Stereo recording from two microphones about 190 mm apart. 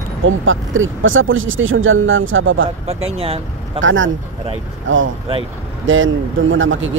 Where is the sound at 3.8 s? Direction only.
90° right.